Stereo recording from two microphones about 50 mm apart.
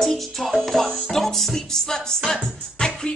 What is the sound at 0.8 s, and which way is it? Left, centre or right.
Music, right.